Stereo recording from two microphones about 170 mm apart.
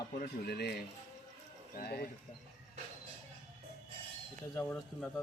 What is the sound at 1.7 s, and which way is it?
Speech, 65° left (ahead or behind).